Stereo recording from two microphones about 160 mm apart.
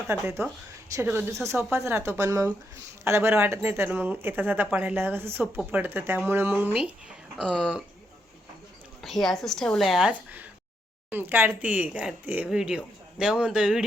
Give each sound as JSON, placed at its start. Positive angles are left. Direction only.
{"t": 0.1, "sound": "speech", "side_deg": -15}
{"t": 7.3, "sound": "speech", "side_deg": 0}
{"t": 9.0, "sound": "speech", "side_deg": 0}